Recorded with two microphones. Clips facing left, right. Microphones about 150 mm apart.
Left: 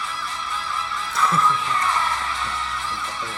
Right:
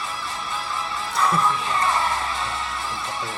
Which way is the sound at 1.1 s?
20° right (ahead or behind).